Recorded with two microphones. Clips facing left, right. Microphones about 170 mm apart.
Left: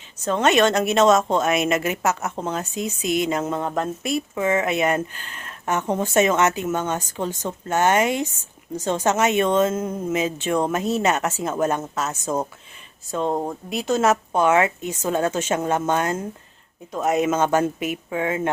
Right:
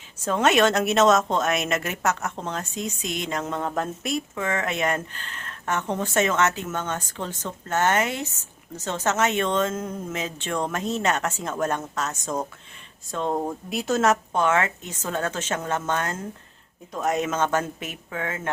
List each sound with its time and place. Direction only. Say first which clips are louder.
0.3 s a woman's voice: left 2 dB; 5° right (ahead or behind)
13.7 s a woman's voice: left 2 dB; centre (ahead or behind); by 18.5 s 15° left (ahead or behind)